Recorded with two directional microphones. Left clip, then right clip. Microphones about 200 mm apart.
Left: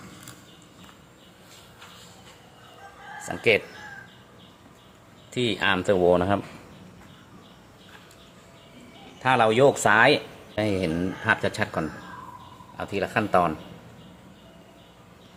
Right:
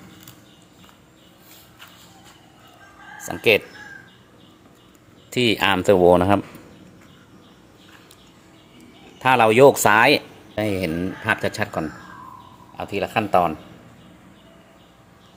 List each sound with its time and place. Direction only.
3.2 s speech: 30° right (ahead or behind)
5.3 s speech: 35° right (ahead or behind)
9.2 s speech: 40° right (ahead or behind)
10.5 s speech: 20° right (ahead or behind)